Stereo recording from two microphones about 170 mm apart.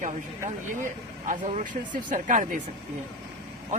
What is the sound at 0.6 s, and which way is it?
Speech, 50° right (ahead or behind).